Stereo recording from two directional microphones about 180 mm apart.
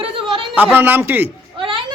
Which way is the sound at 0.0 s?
30° right (ahead or behind).